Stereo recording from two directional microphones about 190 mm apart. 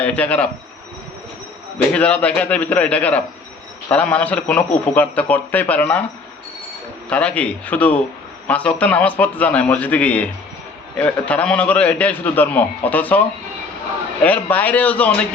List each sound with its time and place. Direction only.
0.0 s a man's voice: 5° left (ahead or behind)
1.9 s a man's voice: 5° left (ahead or behind)
7.1 s a man's voice: 5° left (ahead or behind)